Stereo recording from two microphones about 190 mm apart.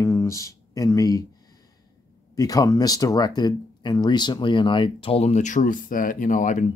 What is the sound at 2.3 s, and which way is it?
Speech, 20° left (ahead or behind).